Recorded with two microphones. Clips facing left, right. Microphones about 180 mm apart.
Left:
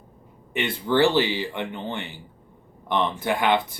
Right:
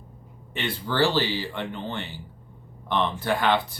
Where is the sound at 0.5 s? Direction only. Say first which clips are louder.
Left 5 dB; 20° left (ahead or behind).